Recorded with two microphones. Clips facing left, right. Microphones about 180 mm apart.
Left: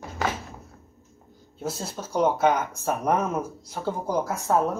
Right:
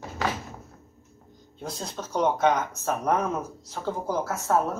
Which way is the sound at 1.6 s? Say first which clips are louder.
Left 3 dB; 5° left (ahead or behind).